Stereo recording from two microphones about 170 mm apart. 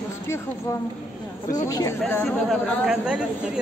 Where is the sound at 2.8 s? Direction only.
5° right (ahead or behind).